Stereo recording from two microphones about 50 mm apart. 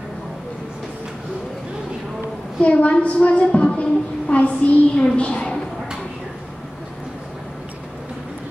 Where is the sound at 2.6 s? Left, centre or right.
Left.